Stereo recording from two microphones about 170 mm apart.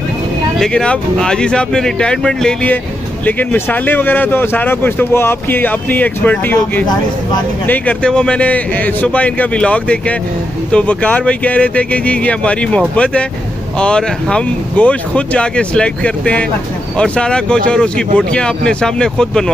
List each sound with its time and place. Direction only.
0.6 s speech: 5° left (ahead or behind)